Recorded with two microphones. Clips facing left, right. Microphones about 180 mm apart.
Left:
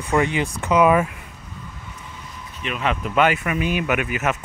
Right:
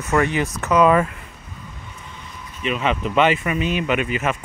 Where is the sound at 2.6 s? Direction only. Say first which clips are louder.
Right 3 dB; centre (ahead or behind).